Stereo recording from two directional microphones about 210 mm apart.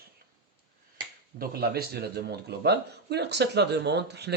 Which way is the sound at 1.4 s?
45° right (ahead or behind).